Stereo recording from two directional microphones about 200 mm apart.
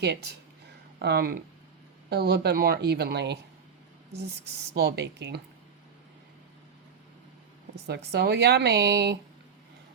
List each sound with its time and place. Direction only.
0.0 s speech: 55° right (ahead or behind)
4.7 s speech: 55° right (ahead or behind)
7.9 s speech: 55° right (ahead or behind)